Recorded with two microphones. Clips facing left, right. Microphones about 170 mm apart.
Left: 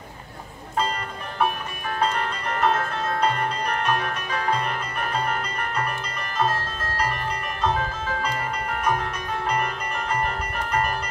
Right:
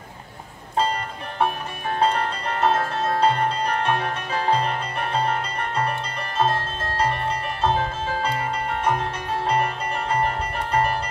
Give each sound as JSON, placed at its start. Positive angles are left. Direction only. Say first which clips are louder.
{"t": 1.4, "sound": "music", "louder": "right 1 dB", "side_deg": -30}